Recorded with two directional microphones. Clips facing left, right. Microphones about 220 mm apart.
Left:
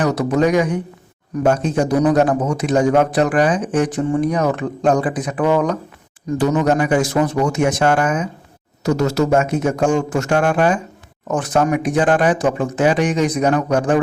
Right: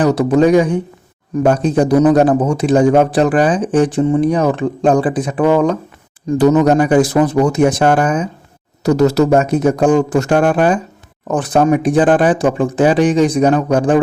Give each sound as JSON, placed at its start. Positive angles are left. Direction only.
{"t": 0.0, "sound": "a man's voice", "side_deg": -30}